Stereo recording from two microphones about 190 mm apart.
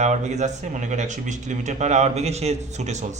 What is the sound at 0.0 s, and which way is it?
A man's voice, 40° right (ahead or behind).